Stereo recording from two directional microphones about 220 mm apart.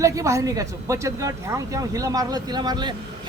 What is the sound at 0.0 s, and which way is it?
Speech, 15° right (ahead or behind).